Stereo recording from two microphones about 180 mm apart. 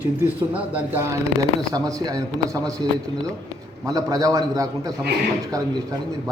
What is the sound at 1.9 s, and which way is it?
Speech, 20° right (ahead or behind).